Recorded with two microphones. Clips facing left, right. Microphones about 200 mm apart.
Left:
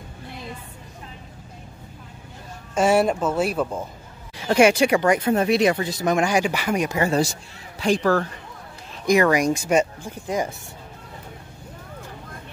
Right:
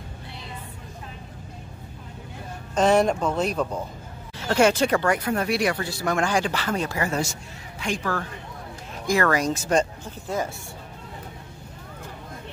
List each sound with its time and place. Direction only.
2.7 s speech: 10° left (ahead or behind)
7.0 s speech: 35° left (ahead or behind)
9.0 s speech: 15° left (ahead or behind)